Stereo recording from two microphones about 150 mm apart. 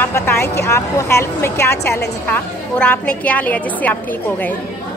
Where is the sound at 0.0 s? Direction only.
15° left (ahead or behind).